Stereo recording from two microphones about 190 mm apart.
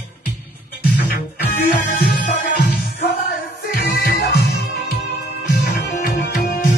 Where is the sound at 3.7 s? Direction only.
60° left (ahead or behind).